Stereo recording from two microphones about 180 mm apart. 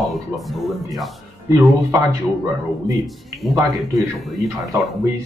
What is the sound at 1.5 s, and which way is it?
Speech, 15° right (ahead or behind).